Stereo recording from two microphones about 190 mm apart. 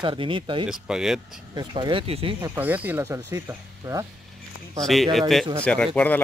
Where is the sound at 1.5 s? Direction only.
20° right (ahead or behind).